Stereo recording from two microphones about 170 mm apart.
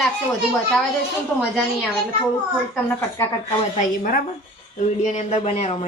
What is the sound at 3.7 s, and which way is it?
A woman's voice, 55° left (ahead or behind).